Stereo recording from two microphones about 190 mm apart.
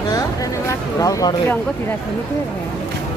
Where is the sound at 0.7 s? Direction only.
20° left (ahead or behind).